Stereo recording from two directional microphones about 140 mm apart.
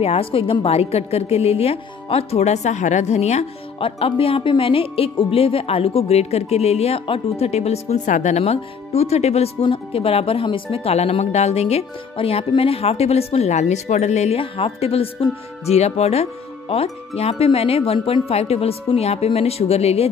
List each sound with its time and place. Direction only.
0.0 s a woman's voice: 45° left (ahead or behind)